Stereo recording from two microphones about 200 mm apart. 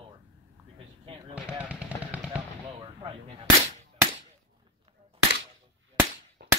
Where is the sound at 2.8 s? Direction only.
25° right (ahead or behind).